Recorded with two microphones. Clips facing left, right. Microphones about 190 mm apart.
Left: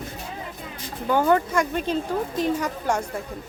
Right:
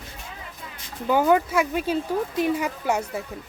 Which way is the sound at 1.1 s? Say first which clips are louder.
Right 1 dB; 10° right (ahead or behind).